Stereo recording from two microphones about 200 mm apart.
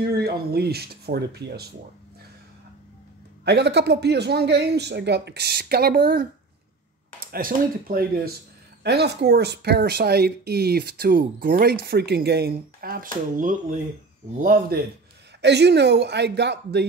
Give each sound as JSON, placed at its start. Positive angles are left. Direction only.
{"t": 0.1, "sound": "speech", "side_deg": -55}
{"t": 3.4, "sound": "speech", "side_deg": -55}
{"t": 15.4, "sound": "speech", "side_deg": -55}